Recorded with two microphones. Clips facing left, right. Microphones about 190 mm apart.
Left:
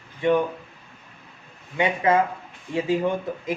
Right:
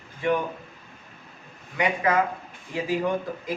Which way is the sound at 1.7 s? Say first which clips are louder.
Left 3 dB; 25° left (ahead or behind).